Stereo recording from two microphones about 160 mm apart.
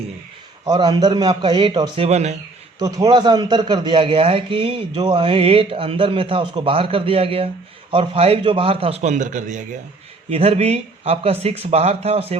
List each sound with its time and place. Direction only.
0.6 s a man's voice: 25° right (ahead or behind); by 2.3 s 45° right (ahead or behind)
2.7 s a man's voice: 25° right (ahead or behind); by 9.6 s 50° right (ahead or behind)
10.2 s a man's voice: 40° right (ahead or behind)